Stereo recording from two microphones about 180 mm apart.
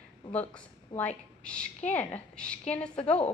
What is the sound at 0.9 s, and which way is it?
A woman's voice, 5° left (ahead or behind).